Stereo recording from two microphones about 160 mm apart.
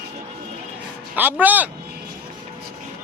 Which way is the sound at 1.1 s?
10° right (ahead or behind).